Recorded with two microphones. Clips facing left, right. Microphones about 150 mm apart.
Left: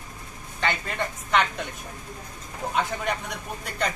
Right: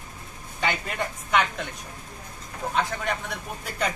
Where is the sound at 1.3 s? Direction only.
Centre (ahead or behind).